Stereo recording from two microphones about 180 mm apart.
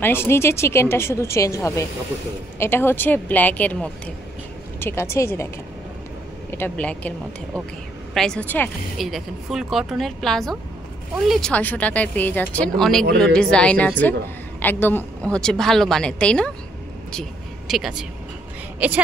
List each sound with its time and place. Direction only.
0.0 s a woman's voice: 15° left (ahead or behind)
6.5 s a woman's voice: 10° left (ahead or behind); by 19.0 s 10° right (ahead or behind)